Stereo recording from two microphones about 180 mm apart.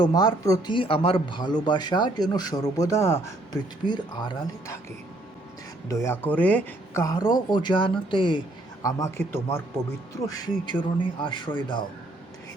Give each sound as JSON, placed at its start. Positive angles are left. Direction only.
{"t": 0.0, "sound": "a man's voice", "side_deg": 25}
{"t": 5.9, "sound": "a man's voice", "side_deg": 15}
{"t": 10.3, "sound": "a man's voice", "side_deg": 25}